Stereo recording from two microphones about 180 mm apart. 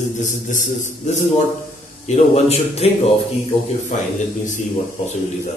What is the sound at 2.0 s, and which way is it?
A man's voice, 35° left (ahead or behind).